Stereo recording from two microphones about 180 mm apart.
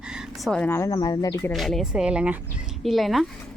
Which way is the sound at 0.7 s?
15° left (ahead or behind).